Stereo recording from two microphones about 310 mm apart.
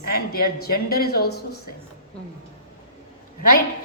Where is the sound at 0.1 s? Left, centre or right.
Left.